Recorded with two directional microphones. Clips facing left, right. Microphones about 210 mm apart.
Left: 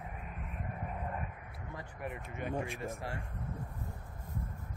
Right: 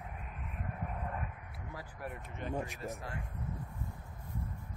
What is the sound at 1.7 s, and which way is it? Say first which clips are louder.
Speech: left 1 dB; 5° right (ahead or behind).